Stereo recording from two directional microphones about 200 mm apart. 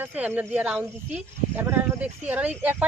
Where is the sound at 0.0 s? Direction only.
10° right (ahead or behind).